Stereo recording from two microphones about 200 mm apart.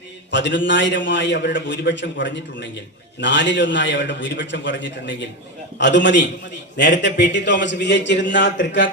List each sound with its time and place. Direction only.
0.3 s a man's voice: 65° left (ahead or behind)